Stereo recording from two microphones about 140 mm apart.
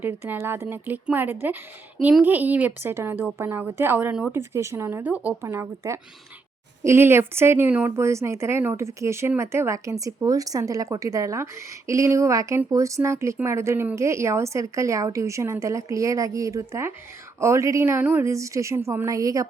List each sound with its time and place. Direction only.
0.0 s speech: 15° right (ahead or behind)